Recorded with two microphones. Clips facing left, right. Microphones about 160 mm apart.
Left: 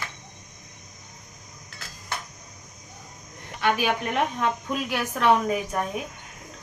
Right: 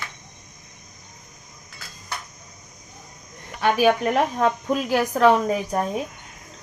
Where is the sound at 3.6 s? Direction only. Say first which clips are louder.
Right 6 dB; 40° right (ahead or behind).